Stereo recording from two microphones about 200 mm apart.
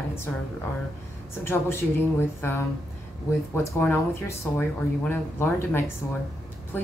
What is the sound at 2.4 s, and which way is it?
A woman's voice, 10° left (ahead or behind).